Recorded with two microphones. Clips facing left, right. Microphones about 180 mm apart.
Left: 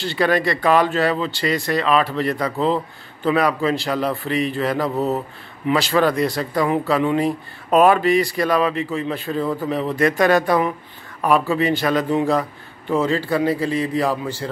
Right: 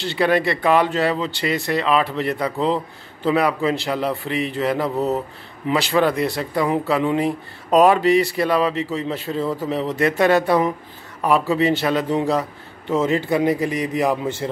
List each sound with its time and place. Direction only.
0.0 s speech: 25° right (ahead or behind)